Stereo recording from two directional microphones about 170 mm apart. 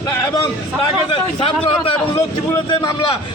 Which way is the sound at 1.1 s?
30° left (ahead or behind).